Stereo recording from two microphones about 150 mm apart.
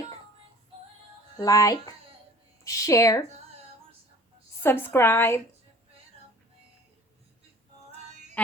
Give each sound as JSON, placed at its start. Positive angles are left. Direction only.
{"t": 1.4, "sound": "a woman's voice", "side_deg": 25}
{"t": 4.6, "sound": "a woman's voice", "side_deg": 15}